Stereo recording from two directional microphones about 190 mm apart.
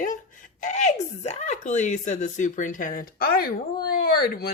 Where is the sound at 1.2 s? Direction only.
35° left (ahead or behind).